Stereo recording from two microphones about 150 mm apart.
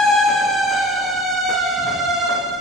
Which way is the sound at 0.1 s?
Centre (ahead or behind).